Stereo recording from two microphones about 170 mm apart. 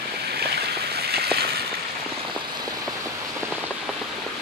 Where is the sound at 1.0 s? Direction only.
70° right (ahead or behind).